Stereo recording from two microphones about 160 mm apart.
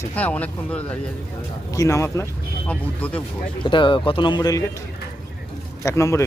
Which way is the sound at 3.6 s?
30° left (ahead or behind).